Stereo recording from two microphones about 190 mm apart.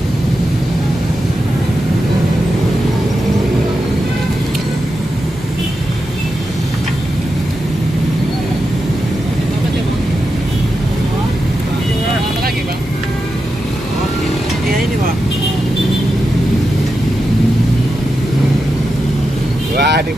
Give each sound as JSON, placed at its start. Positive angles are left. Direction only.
{"t": 19.8, "sound": "vehicle", "side_deg": -60}